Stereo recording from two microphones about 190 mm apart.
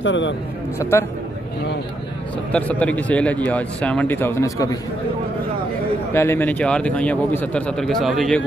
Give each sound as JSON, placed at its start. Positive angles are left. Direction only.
{"t": 0.0, "sound": "a man's voice", "side_deg": 75}
{"t": 0.7, "sound": "speech", "side_deg": 15}
{"t": 2.5, "sound": "speech", "side_deg": 5}
{"t": 6.1, "sound": "speech", "side_deg": 10}